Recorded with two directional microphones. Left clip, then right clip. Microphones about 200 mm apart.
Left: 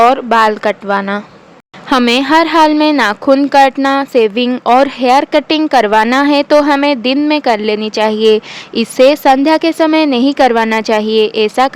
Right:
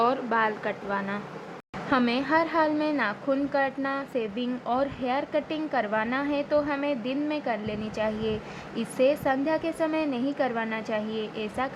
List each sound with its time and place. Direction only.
0.0 s speech: 50° left (ahead or behind)